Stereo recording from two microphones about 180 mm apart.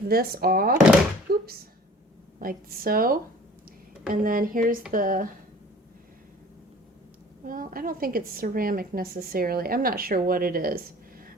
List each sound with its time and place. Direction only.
0.1 s speech: 55° right (ahead or behind)
1.3 s thunk: 60° right (ahead or behind)
2.4 s a woman's voice: 55° right (ahead or behind)
7.4 s a woman's voice: 50° right (ahead or behind)